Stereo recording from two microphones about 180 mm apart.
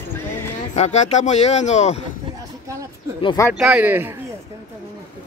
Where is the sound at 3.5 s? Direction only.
5° right (ahead or behind).